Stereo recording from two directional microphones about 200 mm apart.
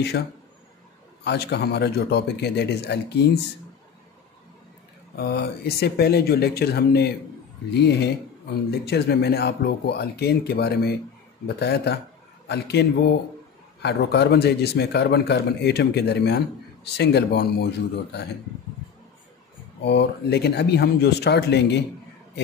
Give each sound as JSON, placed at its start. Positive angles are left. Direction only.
{"t": 0.1, "sound": "a man's voice", "side_deg": 60}
{"t": 5.1, "sound": "a man's voice", "side_deg": 55}
{"t": 19.8, "sound": "a man's voice", "side_deg": 60}